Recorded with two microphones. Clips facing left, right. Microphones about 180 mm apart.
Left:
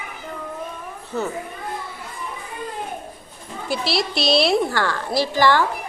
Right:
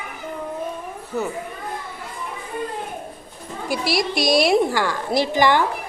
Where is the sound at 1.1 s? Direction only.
15° right (ahead or behind).